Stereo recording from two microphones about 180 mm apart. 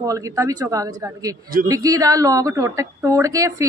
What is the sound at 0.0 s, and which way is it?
A woman's voice, 20° right (ahead or behind).